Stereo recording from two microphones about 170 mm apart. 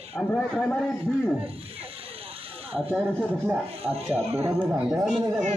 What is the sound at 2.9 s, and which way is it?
Speech, 5° left (ahead or behind).